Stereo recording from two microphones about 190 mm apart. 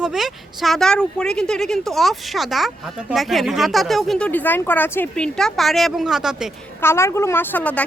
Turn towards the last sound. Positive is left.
turn(degrees=10)  # may be behind; listen again after turning